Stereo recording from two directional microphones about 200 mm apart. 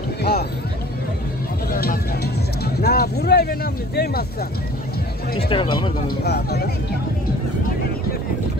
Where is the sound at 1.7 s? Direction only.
50° left (ahead or behind).